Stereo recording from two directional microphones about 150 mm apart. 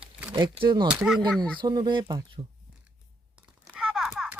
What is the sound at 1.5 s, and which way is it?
Speech, 30° right (ahead or behind).